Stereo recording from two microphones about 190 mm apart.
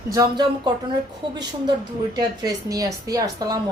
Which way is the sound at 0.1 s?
20° right (ahead or behind).